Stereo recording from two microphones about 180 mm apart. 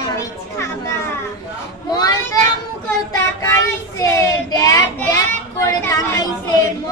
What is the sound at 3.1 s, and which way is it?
A child's voice, 15° left (ahead or behind).